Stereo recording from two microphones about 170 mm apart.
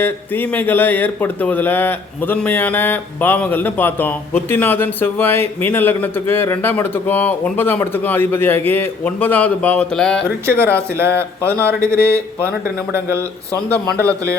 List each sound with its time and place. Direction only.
0.0 s speech: 10° left (ahead or behind)
10.2 s speech: 15° right (ahead or behind)